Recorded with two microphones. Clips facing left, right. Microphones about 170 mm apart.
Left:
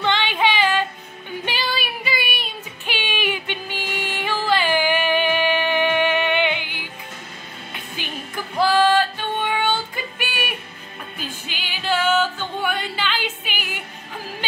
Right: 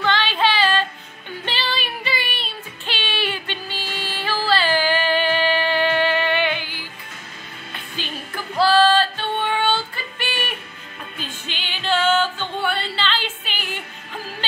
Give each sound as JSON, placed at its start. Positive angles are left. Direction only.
{"t": 0.0, "sound": "female singing", "side_deg": 20}
{"t": 1.4, "sound": "child singing", "side_deg": 10}
{"t": 8.0, "sound": "music", "side_deg": 15}
{"t": 8.5, "sound": "female singing", "side_deg": 15}
{"t": 11.1, "sound": "music", "side_deg": 10}